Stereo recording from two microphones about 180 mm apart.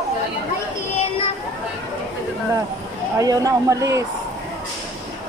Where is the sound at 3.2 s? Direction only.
20° right (ahead or behind).